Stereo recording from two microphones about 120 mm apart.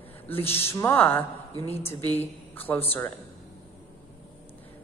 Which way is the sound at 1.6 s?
55° left (ahead or behind).